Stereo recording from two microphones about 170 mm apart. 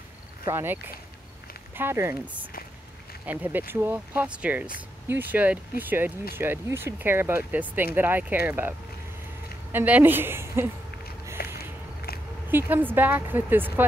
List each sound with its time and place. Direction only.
0.5 s speech: 15° right (ahead or behind)
11.4 s a sound: 65° left (ahead or behind)
12.4 s speech: 10° right (ahead or behind)